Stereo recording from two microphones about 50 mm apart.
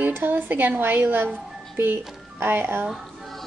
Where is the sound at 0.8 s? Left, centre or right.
Right.